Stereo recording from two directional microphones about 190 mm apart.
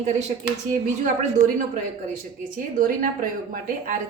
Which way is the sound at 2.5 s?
45° right (ahead or behind).